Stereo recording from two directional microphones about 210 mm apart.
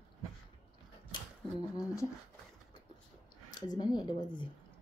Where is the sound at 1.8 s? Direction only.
15° left (ahead or behind).